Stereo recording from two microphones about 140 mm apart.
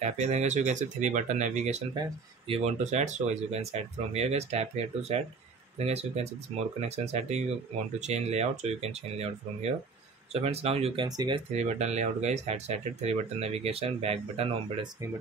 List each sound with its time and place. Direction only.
0.0 s speech: 55° right (ahead or behind)
11.1 s speech: 30° right (ahead or behind)
11.5 s speech: 55° right (ahead or behind)